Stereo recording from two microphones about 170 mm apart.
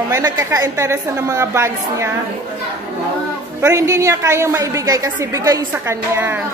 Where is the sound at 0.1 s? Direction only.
20° right (ahead or behind).